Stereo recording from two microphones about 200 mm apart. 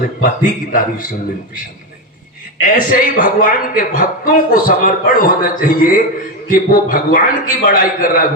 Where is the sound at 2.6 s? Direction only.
45° left (ahead or behind).